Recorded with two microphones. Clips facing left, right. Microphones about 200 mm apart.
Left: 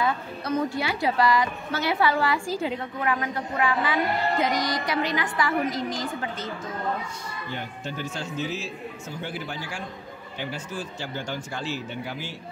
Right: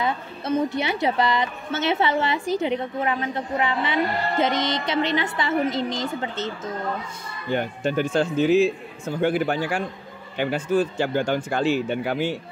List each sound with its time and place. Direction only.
0.0 s a woman's voice: 25° right (ahead or behind)
7.5 s a man's voice: 55° right (ahead or behind)